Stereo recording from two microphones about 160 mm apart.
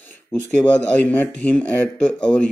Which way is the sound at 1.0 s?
10° left (ahead or behind).